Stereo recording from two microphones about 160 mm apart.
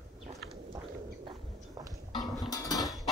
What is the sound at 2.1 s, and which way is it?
Music, centre (ahead or behind).